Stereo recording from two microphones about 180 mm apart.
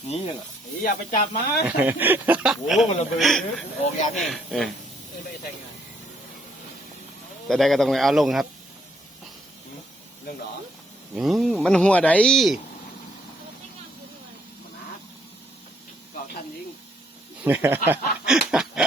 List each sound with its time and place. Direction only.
0.8 s speech: 55° left (ahead or behind)
1.6 s speech: 10° right (ahead or behind)
7.4 s speech: centre (ahead or behind)
11.2 s speech: centre (ahead or behind)
17.4 s speech: 10° right (ahead or behind)